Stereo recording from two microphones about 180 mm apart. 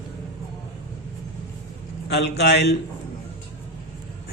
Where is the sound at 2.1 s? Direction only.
70° left (ahead or behind).